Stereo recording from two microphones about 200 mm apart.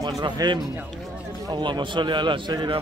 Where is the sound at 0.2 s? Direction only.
20° right (ahead or behind).